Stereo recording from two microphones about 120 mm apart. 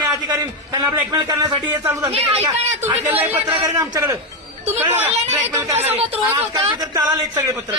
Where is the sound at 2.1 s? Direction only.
55° right (ahead or behind).